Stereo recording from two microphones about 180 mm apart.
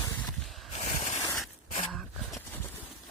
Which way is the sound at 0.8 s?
40° left (ahead or behind).